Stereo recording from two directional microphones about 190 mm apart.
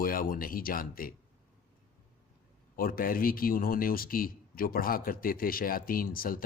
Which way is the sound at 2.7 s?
50° left (ahead or behind).